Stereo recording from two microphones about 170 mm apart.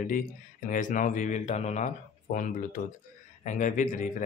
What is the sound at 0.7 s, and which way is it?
Speech, 50° left (ahead or behind).